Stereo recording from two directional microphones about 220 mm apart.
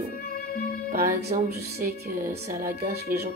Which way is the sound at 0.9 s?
40° right (ahead or behind).